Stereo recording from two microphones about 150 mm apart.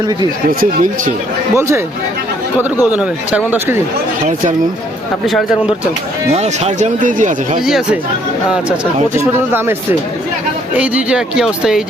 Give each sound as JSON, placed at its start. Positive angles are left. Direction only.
{"t": 0.6, "sound": "speech", "side_deg": -60}
{"t": 1.5, "sound": "speech", "side_deg": -20}
{"t": 2.9, "sound": "speech", "side_deg": -10}
{"t": 6.3, "sound": "speech", "side_deg": -45}
{"t": 7.6, "sound": "speech", "side_deg": -5}
{"t": 9.1, "sound": "speech", "side_deg": -15}
{"t": 10.8, "sound": "speech", "side_deg": -5}